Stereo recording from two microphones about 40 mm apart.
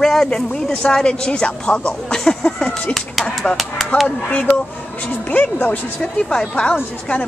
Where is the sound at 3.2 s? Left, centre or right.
Centre.